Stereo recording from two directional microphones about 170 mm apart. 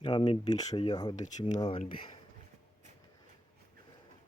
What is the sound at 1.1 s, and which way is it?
Speech, 45° left (ahead or behind).